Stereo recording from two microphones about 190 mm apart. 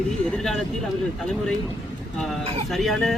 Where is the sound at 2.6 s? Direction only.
Centre (ahead or behind).